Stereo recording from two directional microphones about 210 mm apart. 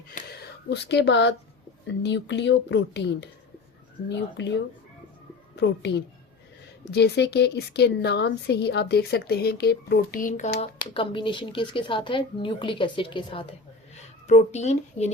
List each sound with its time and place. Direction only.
0.1 s a sound: 50° left (ahead or behind)
2.0 s a woman's voice: 55° left (ahead or behind)
5.5 s a woman's voice: 55° left (ahead or behind); by 15.1 s 30° left (ahead or behind)